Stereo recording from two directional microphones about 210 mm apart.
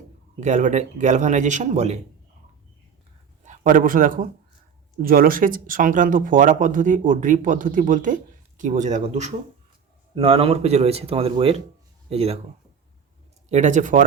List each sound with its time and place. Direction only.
0.3 s speech: 35° right (ahead or behind)
3.4 s speech: 35° right (ahead or behind)
13.5 s speech: 35° right (ahead or behind)